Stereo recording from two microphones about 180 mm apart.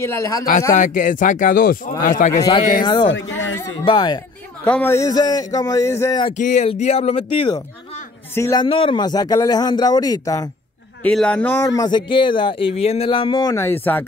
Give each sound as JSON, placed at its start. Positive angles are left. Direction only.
{"t": 0.0, "sound": "a man's voice", "side_deg": 15}
{"t": 0.7, "sound": "speech", "side_deg": 45}
{"t": 2.3, "sound": "a man's voice", "side_deg": 20}
{"t": 3.1, "sound": "speech", "side_deg": 90}
{"t": 3.8, "sound": "a man's voice", "side_deg": 25}
{"t": 4.6, "sound": "a man's voice", "side_deg": 10}
{"t": 6.3, "sound": "speech", "side_deg": 40}
{"t": 8.4, "sound": "a man's voice", "side_deg": 15}
{"t": 8.6, "sound": "a man's voice", "side_deg": 30}
{"t": 11.0, "sound": "a man's voice", "side_deg": 5}